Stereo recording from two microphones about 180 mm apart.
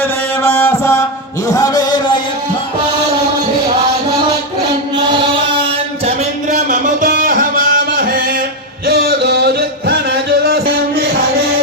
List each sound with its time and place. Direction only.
0.0 s mantra: 15° left (ahead or behind)
1.5 s a sound: 20° left (ahead or behind)
6.5 s music: 45° right (ahead or behind); by 10.6 s 65° right (ahead or behind)